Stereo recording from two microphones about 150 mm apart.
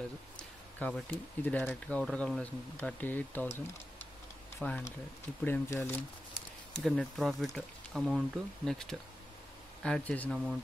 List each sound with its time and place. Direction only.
0.4 s speech: 5° left (ahead or behind)
6.7 s speech: centre (ahead or behind)
10.3 s speech: centre (ahead or behind)